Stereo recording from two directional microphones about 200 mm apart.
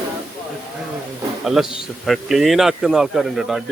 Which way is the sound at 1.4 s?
Centre (ahead or behind).